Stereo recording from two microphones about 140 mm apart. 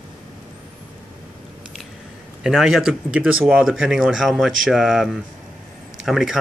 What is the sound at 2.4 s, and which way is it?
Speech, centre (ahead or behind).